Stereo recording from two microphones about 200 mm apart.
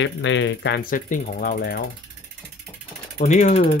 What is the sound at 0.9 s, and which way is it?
Speech, 40° left (ahead or behind).